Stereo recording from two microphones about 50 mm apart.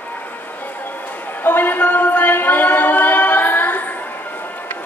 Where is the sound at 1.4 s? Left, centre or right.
Left.